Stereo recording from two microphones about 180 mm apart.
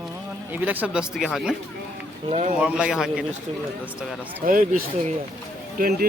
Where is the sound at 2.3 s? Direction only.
40° right (ahead or behind).